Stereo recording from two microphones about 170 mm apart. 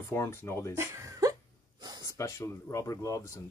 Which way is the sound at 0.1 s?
15° left (ahead or behind).